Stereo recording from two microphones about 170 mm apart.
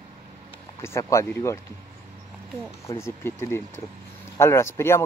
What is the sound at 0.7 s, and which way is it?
Speech, 15° left (ahead or behind).